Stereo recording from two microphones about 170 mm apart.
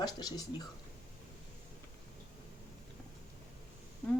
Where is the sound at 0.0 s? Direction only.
25° left (ahead or behind).